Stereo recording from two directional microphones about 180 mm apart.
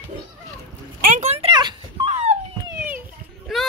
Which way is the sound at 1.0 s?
40° right (ahead or behind).